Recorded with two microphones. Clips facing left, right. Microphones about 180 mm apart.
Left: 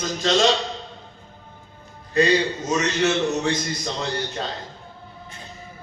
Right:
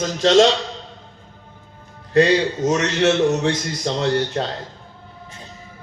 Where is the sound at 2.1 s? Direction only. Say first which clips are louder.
Right 4 dB; 85° right.